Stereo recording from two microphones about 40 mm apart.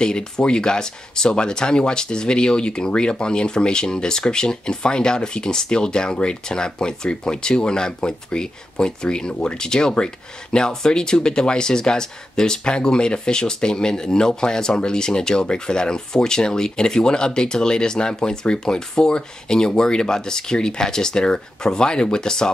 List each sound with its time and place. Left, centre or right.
0.0 s speech: centre